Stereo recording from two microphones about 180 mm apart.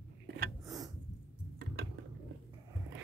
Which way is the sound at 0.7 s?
20° right (ahead or behind).